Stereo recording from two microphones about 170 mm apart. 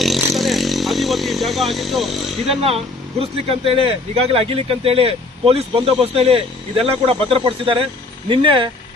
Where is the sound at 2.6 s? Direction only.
35° right (ahead or behind).